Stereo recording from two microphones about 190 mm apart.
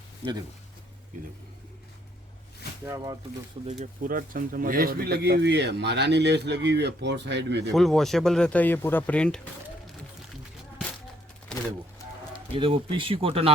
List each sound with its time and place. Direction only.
0.2 s speech: 10° left (ahead or behind)
2.8 s speech: 15° right (ahead or behind)
3.7 s speech: 45° right (ahead or behind); by 7.7 s 65° right (ahead or behind)
7.7 s speech: centre (ahead or behind)
12.5 s speech: 25° right (ahead or behind)